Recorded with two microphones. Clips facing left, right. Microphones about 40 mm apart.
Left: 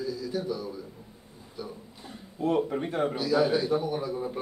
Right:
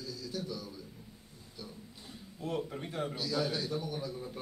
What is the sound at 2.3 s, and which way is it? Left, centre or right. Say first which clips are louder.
A man's voice: left 11 dB; left.